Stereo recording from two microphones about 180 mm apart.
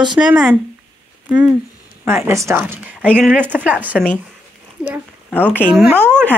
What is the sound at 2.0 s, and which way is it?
A woman's voice, 15° right (ahead or behind).